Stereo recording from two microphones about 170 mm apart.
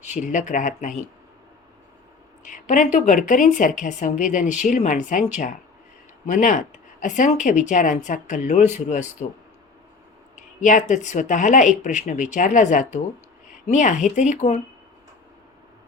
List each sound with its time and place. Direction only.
0.0 s a woman's voice: 45° left (ahead or behind)
2.4 s a woman's voice: 50° left (ahead or behind)